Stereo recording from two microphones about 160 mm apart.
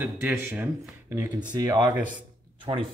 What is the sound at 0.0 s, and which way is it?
Speech, 10° right (ahead or behind).